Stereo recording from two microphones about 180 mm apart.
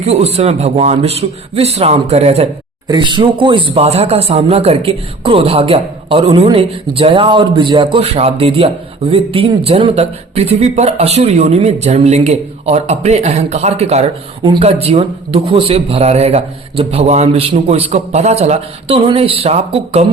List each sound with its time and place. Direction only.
0.0 s speech: 35° right (ahead or behind)
2.8 s speech: 25° right (ahead or behind)